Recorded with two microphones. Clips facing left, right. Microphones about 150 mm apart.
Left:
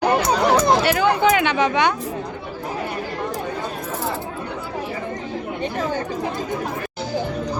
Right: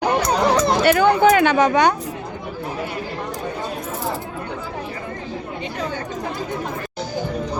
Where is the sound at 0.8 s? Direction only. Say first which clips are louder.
Right 3 dB; 50° right (ahead or behind).